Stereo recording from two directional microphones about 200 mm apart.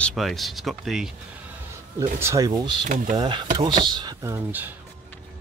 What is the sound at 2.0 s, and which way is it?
Speech, 15° right (ahead or behind).